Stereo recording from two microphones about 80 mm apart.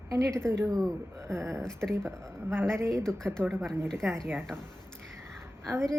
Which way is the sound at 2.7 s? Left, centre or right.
Right.